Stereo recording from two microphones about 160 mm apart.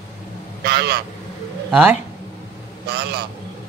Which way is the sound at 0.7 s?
85° right.